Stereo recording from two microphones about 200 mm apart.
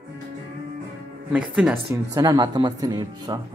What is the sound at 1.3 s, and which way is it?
Speech, 5° right (ahead or behind).